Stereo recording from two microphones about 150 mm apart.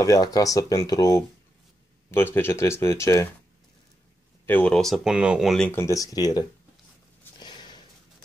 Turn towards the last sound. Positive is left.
turn(degrees=30)  # may be behind; listen again after turning